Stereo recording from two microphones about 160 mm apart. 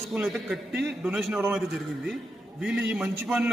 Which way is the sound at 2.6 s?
5° right (ahead or behind).